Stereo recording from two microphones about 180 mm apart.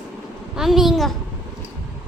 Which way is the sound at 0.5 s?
Centre (ahead or behind).